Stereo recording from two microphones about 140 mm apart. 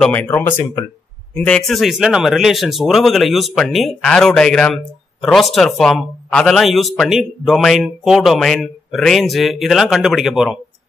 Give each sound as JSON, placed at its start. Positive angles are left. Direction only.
{"t": 0.0, "sound": "speech", "side_deg": 10}
{"t": 1.4, "sound": "speech", "side_deg": 5}